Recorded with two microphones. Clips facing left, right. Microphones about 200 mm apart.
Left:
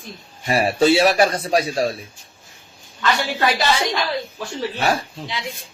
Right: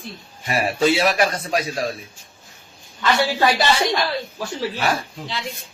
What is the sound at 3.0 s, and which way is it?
Speech, 10° right (ahead or behind).